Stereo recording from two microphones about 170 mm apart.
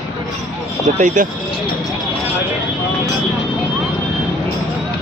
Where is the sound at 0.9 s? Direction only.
45° right (ahead or behind).